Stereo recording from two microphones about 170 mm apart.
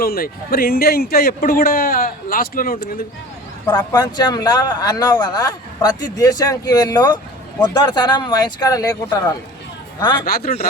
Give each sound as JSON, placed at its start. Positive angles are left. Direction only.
{"t": 0.0, "sound": "speech", "side_deg": 60}
{"t": 3.9, "sound": "speech", "side_deg": 25}
{"t": 10.2, "sound": "speech", "side_deg": 60}